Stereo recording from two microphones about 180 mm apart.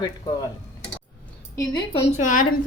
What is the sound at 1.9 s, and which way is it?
Speech, 40° left (ahead or behind).